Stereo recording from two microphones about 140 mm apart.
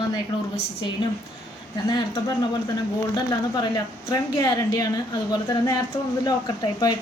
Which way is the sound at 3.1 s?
30° left (ahead or behind).